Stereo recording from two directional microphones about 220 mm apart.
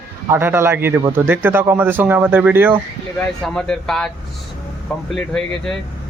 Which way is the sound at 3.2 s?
5° left (ahead or behind).